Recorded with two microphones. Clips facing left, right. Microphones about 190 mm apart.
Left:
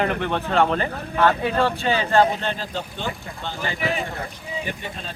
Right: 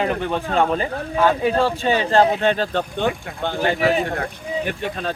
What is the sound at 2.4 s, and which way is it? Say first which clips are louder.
Speech: right 8 dB; 65° right (ahead or behind).